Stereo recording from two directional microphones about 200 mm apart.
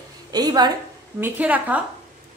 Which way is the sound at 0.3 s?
20° right (ahead or behind).